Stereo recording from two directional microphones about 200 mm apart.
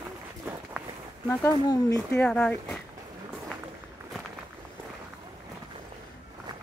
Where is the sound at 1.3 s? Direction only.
15° left (ahead or behind).